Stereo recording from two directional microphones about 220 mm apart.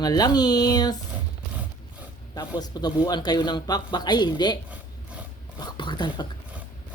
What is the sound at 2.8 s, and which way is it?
Speech, 20° left (ahead or behind).